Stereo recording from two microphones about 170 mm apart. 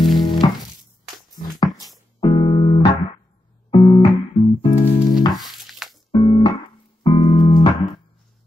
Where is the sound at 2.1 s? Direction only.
25° left (ahead or behind).